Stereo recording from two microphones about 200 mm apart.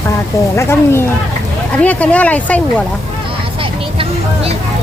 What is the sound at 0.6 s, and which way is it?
Speech, 10° left (ahead or behind).